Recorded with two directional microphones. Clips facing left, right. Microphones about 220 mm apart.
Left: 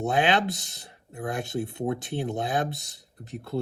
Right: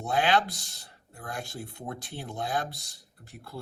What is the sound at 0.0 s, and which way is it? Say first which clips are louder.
Speech: left 2 dB; 20° left (ahead or behind).